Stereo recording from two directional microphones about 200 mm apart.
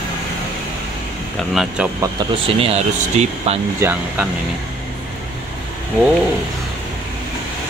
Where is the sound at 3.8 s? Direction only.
10° right (ahead or behind).